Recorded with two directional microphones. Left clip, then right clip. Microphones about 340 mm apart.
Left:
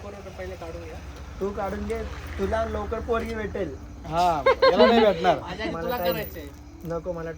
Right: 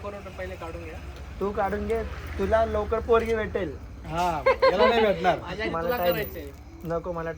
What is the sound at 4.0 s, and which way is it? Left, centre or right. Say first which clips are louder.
A woman's voice: left 3 dB; left.